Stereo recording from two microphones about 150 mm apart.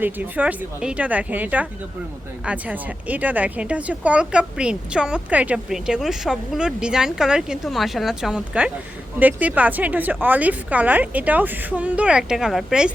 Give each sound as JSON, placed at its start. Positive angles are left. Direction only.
{"t": 0.0, "sound": "a woman's voice", "side_deg": -10}